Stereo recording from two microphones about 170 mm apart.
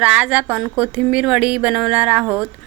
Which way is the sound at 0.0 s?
5° right (ahead or behind).